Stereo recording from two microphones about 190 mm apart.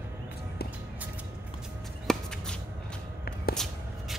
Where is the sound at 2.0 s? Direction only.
5° left (ahead or behind).